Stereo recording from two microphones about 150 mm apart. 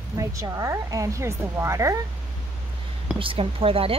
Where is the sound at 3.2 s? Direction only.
35° right (ahead or behind).